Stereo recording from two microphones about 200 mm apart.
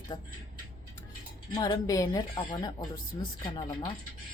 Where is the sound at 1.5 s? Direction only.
20° left (ahead or behind).